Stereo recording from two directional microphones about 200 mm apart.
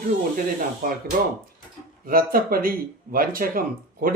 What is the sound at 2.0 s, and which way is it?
Speech, 45° right (ahead or behind).